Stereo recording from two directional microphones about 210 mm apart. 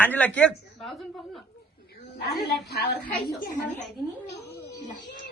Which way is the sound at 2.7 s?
50° left (ahead or behind).